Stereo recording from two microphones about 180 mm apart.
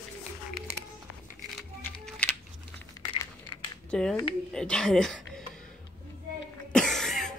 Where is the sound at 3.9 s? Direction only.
5° left (ahead or behind).